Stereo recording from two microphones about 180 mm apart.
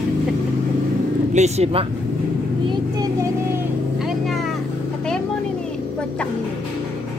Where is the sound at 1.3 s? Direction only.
40° right (ahead or behind).